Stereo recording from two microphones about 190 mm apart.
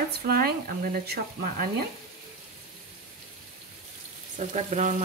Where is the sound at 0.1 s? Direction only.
55° right (ahead or behind).